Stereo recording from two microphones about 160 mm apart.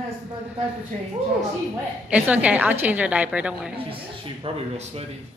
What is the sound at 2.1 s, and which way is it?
A woman's voice, 10° right (ahead or behind).